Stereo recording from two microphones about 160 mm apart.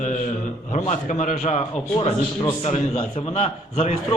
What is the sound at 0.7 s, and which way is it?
Speech, 50° left (ahead or behind).